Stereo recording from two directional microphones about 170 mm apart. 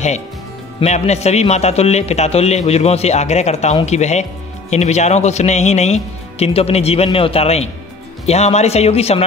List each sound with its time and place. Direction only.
0.7 s speech: 40° left (ahead or behind)